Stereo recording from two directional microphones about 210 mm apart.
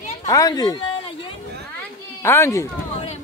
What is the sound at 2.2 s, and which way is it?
Speech, 10° left (ahead or behind).